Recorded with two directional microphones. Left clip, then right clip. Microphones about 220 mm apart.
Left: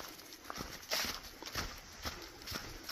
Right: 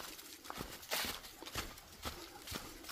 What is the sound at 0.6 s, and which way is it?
Dog, 40° left (ahead or behind).